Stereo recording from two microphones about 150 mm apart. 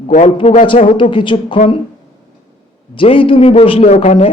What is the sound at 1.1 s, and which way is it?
Speech, 35° left (ahead or behind).